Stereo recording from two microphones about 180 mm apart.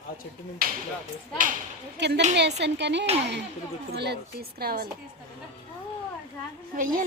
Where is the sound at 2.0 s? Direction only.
70° right (ahead or behind); by 4.9 s 55° right (ahead or behind).